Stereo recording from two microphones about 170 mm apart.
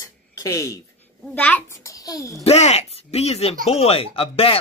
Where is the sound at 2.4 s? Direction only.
40° left (ahead or behind).